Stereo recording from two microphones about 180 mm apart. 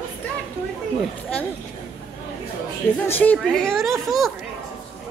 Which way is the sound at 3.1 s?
10° left (ahead or behind).